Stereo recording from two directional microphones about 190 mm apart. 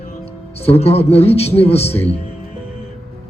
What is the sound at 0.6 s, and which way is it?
A man's voice, 35° left (ahead or behind).